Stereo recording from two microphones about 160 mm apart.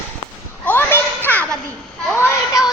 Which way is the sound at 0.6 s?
15° left (ahead or behind).